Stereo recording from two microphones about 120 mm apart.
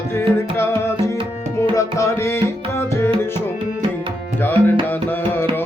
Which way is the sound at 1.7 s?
25° left (ahead or behind).